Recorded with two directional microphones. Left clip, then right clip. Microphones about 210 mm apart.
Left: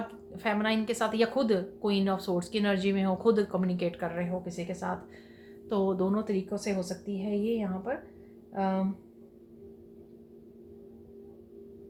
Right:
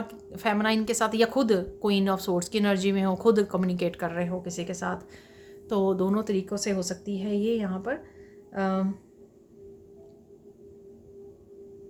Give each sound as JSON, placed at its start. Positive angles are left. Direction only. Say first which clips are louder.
{"t": 0.3, "sound": "a woman's voice", "louder": "right 4 dB", "side_deg": -30}
{"t": 5.6, "sound": "a woman's voice", "louder": "right 3 dB", "side_deg": -25}